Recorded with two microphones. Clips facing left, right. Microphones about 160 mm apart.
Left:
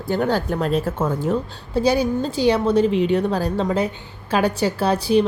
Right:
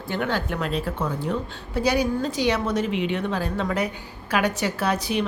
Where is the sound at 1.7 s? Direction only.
30° left (ahead or behind).